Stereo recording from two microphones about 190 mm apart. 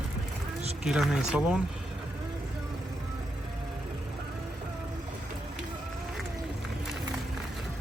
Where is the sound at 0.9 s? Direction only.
Centre (ahead or behind).